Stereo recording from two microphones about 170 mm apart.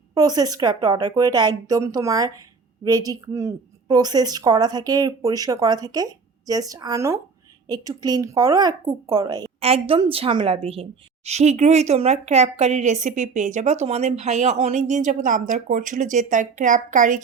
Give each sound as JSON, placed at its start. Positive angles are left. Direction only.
{"t": 0.1, "sound": "a woman's voice", "side_deg": -20}
{"t": 9.6, "sound": "a woman's voice", "side_deg": -35}